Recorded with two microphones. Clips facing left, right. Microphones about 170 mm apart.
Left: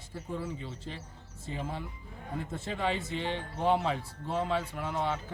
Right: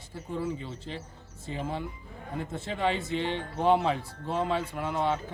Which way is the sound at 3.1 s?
70° right (ahead or behind).